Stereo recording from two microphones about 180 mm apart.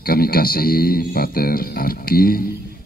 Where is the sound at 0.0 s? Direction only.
55° left (ahead or behind).